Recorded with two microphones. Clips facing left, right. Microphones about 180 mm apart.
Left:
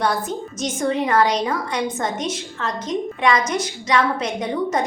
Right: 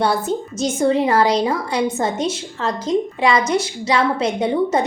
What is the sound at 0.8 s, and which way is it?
A woman's voice, 30° right (ahead or behind).